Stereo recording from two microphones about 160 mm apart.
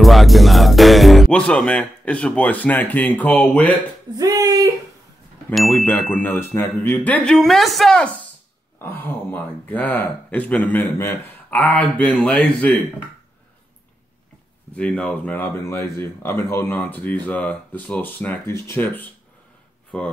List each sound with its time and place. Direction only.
0.0 s a man's voice: centre (ahead or behind)
4.1 s speech: 20° right (ahead or behind)
5.5 s speech: centre (ahead or behind)
6.2 s a man's voice: 15° left (ahead or behind)
14.8 s a man's voice: 5° left (ahead or behind)